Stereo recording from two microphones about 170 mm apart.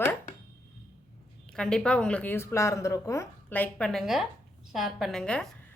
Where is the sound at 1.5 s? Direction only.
5° left (ahead or behind).